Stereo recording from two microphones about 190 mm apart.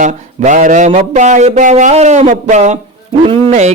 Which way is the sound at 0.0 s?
40° right (ahead or behind).